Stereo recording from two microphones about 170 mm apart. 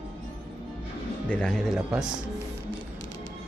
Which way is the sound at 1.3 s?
5° left (ahead or behind).